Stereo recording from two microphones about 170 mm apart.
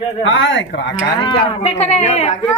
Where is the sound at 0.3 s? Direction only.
90° left.